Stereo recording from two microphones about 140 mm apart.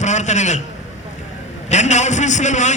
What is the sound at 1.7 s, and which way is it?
A man's voice, 55° left (ahead or behind).